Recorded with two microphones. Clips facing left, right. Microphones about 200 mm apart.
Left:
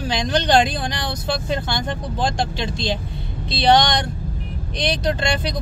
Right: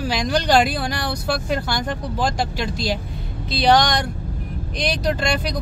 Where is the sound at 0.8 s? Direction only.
20° left (ahead or behind).